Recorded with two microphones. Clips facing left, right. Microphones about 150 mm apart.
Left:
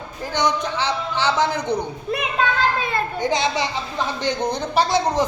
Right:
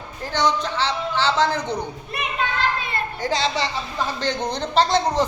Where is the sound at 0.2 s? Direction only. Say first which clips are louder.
Even; 15° left (ahead or behind).